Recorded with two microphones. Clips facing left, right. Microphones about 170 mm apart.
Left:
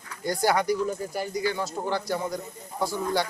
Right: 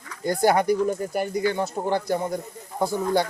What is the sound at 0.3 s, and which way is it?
Speech, 50° right (ahead or behind).